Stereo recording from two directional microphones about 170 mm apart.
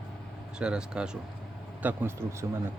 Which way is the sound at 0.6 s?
5° right (ahead or behind).